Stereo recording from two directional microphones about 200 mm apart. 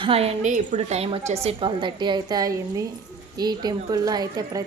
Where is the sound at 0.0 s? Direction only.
30° right (ahead or behind).